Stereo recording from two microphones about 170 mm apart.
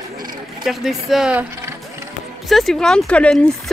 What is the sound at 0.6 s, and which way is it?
A woman's voice, centre (ahead or behind).